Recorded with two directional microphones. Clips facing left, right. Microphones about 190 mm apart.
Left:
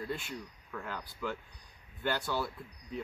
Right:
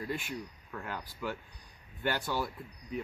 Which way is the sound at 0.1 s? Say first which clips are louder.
Right 2 dB; 15° right (ahead or behind).